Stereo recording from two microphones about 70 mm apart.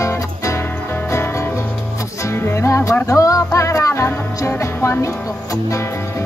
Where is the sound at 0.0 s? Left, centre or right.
Left.